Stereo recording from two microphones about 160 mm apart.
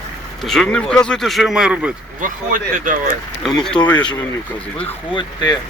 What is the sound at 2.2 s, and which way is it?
Speech, 55° right (ahead or behind).